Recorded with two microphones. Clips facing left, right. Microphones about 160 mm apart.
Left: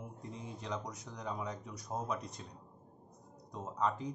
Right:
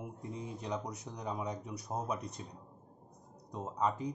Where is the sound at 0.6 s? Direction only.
10° right (ahead or behind).